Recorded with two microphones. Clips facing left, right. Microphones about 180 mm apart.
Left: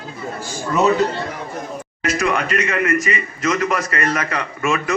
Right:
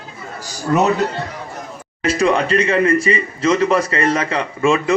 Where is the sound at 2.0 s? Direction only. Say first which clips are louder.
Right 4 dB; 30° right (ahead or behind).